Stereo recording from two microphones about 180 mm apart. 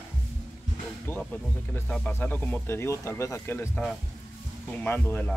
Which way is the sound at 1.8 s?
5° left (ahead or behind).